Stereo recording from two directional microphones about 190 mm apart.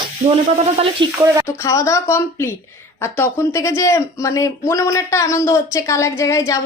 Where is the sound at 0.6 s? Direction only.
30° right (ahead or behind).